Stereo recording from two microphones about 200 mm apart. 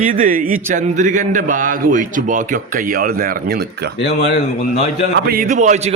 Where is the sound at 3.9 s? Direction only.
60° left (ahead or behind).